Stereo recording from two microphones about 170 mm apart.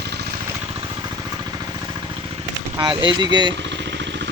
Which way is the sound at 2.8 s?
25° right (ahead or behind).